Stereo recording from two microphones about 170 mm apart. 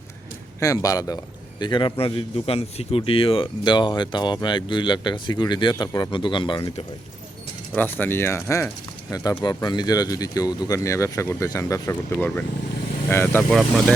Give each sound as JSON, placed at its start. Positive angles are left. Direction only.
{"t": 0.6, "sound": "a man's voice", "side_deg": 20}
{"t": 7.8, "sound": "a man's voice", "side_deg": 10}
{"t": 13.5, "sound": "speech", "side_deg": 0}